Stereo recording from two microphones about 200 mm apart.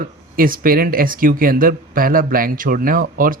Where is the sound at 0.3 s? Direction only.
45° right (ahead or behind).